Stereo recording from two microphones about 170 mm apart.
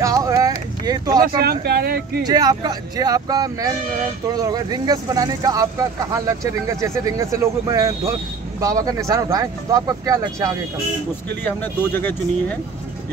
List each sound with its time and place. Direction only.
0.0 s a sound: 20° right (ahead or behind)
0.8 s speech: 20° right (ahead or behind)
1.2 s speech: 65° right (ahead or behind)
2.2 s speech: 25° right (ahead or behind)
11.4 s speech: 10° left (ahead or behind)